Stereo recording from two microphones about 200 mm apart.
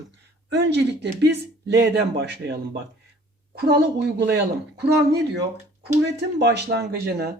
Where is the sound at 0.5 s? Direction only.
55° right (ahead or behind).